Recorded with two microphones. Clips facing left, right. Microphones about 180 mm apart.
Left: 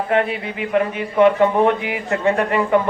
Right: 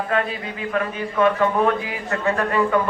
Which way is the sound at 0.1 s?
25° left (ahead or behind).